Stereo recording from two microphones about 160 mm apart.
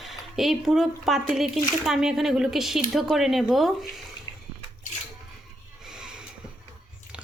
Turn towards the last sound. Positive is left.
turn(degrees=-5)  # may be behind; listen again after turning